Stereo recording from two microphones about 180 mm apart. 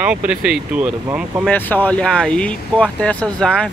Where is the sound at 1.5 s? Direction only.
10° left (ahead or behind).